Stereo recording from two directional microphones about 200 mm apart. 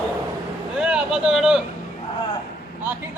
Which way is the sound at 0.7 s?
5° right (ahead or behind).